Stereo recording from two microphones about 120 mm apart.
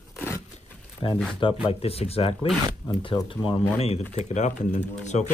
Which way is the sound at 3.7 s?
60° left (ahead or behind).